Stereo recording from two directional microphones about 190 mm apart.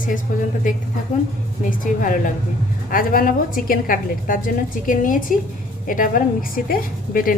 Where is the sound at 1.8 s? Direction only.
45° left (ahead or behind).